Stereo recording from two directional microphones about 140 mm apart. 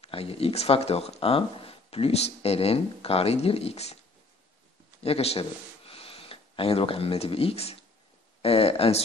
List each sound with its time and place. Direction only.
0.0 s speech: 45° left (ahead or behind)
5.0 s speech: 45° left (ahead or behind)